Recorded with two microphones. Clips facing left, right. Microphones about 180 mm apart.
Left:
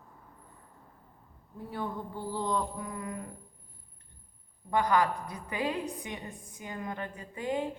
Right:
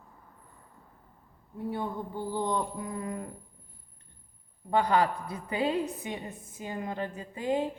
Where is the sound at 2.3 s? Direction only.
20° right (ahead or behind).